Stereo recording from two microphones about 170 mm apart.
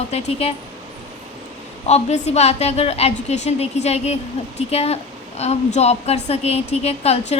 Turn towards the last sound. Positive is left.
turn(degrees=35)  # may be behind; listen again after turning